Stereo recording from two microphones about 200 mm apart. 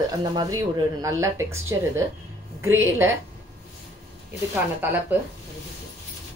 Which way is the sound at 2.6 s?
10° right (ahead or behind).